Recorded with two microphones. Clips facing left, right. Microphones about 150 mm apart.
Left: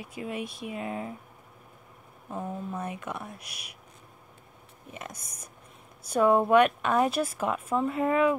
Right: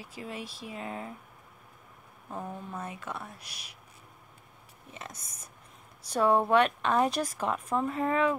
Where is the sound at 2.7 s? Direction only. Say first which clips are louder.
Left 4 dB; 15° left (ahead or behind).